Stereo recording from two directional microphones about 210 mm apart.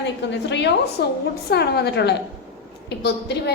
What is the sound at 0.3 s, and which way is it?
A woman's voice, 55° left (ahead or behind).